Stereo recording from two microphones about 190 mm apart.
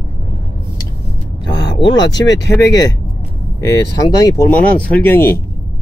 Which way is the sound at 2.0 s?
70° left (ahead or behind).